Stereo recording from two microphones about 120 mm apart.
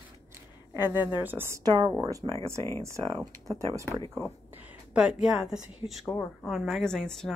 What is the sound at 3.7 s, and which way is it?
Speech, 25° right (ahead or behind).